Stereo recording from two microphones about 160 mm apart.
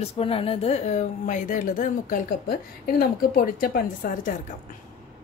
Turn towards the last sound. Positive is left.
turn(degrees=55)  # may be behind; listen again after turning